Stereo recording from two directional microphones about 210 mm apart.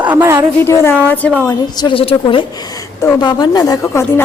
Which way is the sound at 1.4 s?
20° left (ahead or behind).